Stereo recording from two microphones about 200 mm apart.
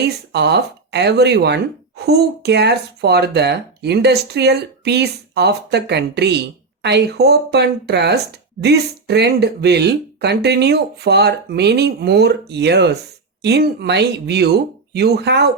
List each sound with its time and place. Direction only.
0.3 s speech: 55° right (ahead or behind)